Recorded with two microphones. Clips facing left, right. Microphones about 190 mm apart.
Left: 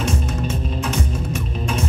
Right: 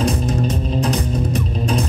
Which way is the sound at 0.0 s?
35° right (ahead or behind).